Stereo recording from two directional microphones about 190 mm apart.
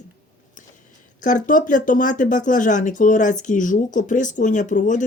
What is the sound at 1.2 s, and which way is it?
Speech, 40° left (ahead or behind).